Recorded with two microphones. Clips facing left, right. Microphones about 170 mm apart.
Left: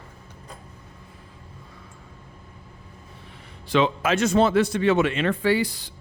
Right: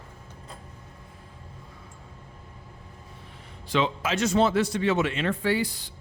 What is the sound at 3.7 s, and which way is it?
Speech, 65° left (ahead or behind).